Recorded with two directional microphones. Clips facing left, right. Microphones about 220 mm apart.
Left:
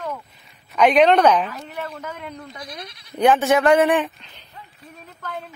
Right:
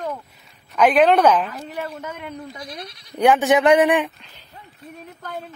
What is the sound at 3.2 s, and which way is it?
Speech, 15° right (ahead or behind).